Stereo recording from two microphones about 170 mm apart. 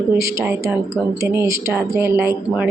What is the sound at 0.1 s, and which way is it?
Speech, 15° right (ahead or behind).